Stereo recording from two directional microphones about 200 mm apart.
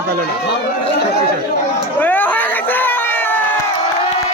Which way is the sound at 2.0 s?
10° left (ahead or behind).